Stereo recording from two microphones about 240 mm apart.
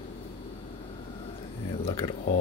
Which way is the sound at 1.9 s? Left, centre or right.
Left.